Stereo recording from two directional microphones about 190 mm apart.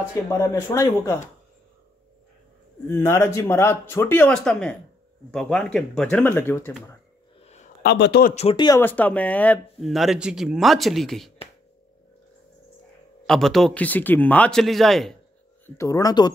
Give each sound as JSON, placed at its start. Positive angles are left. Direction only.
{"t": 0.3, "sound": "speech", "side_deg": 15}
{"t": 2.9, "sound": "speech", "side_deg": 15}
{"t": 7.4, "sound": "a sound", "side_deg": 35}
{"t": 7.8, "sound": "speech", "side_deg": 60}
{"t": 8.4, "sound": "speech", "side_deg": 25}
{"t": 13.3, "sound": "speech", "side_deg": 0}
{"t": 15.6, "sound": "speech", "side_deg": 15}